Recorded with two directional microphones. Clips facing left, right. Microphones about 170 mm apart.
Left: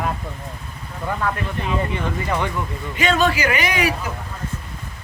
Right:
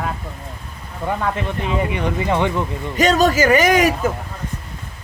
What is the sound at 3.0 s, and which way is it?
Speech, 40° right (ahead or behind).